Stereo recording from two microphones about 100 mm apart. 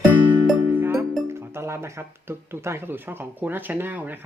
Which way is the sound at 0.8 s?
25° right (ahead or behind).